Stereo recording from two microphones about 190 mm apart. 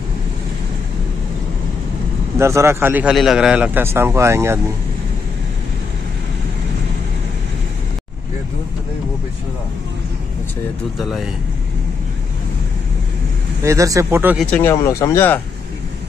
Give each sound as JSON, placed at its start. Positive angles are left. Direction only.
{"t": 2.3, "sound": "a man's voice", "side_deg": -15}
{"t": 11.0, "sound": "speech", "side_deg": 0}
{"t": 13.7, "sound": "a man's voice", "side_deg": -15}
{"t": 14.4, "sound": "speech", "side_deg": 10}